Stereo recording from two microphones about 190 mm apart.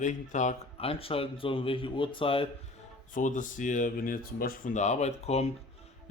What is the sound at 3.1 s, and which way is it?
Speech, 45° left (ahead or behind).